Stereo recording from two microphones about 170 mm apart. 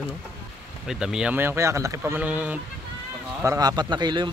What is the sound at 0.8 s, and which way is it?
Speech, 5° right (ahead or behind).